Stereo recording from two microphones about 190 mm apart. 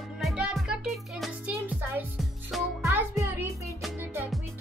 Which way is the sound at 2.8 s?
15° right (ahead or behind).